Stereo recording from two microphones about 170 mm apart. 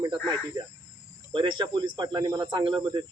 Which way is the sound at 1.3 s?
30° right (ahead or behind).